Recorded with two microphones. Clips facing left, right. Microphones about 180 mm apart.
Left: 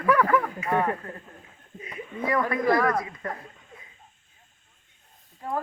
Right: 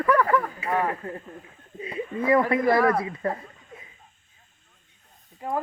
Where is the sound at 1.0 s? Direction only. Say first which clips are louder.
Right 5 dB; 25° right (ahead or behind).